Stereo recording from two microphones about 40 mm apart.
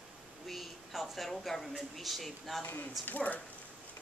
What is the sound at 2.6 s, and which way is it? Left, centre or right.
Speech, left.